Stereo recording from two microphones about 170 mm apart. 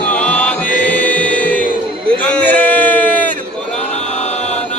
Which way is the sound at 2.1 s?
10° left (ahead or behind).